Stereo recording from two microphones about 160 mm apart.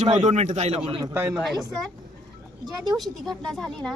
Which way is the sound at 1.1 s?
15° right (ahead or behind).